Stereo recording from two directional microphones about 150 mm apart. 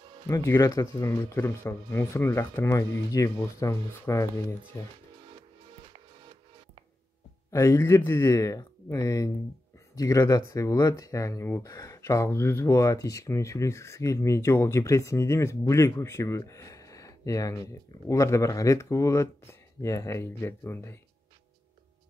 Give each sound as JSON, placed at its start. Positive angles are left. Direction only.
{"t": 0.3, "sound": "speech", "side_deg": 20}
{"t": 7.5, "sound": "speech", "side_deg": 20}